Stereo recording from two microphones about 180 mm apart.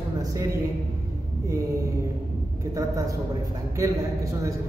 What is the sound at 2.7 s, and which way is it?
A man's voice, 20° right (ahead or behind).